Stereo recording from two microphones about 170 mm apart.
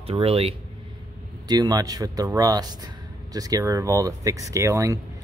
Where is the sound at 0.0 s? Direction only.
35° right (ahead or behind).